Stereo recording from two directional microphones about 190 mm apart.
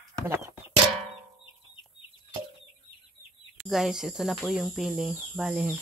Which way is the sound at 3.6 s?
Centre (ahead or behind).